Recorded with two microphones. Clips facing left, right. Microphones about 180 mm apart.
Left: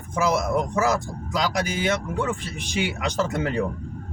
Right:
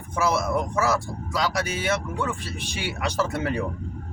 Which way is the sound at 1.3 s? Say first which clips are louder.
Left 1 dB; 20° left (ahead or behind).